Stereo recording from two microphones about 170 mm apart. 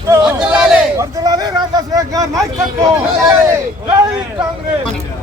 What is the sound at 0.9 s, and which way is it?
Speech, 20° right (ahead or behind).